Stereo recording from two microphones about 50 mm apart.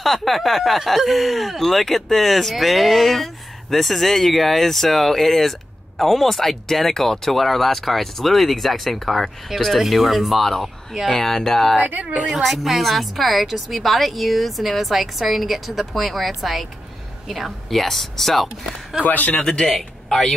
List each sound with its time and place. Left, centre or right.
0.0 s a woman's voice: centre
11.8 s a woman's voice: right
12.3 s a woman's voice: centre
19.0 s speech: left
19.4 s speech: centre